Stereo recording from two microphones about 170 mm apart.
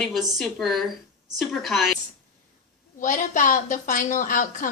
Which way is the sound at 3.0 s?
50° left (ahead or behind).